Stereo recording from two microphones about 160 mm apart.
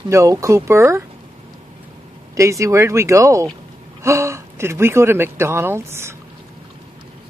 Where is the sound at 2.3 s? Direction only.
20° right (ahead or behind).